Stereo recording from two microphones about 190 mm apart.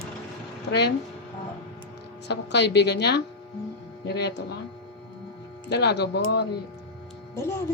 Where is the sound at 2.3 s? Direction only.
65° left (ahead or behind).